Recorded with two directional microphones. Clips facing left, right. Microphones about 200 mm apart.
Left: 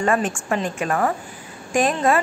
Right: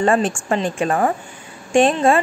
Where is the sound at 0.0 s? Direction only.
30° right (ahead or behind).